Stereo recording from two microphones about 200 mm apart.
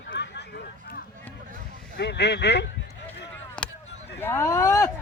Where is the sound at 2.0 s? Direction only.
55° left (ahead or behind).